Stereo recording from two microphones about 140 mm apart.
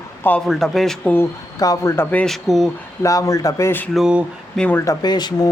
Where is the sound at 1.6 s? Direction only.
20° left (ahead or behind).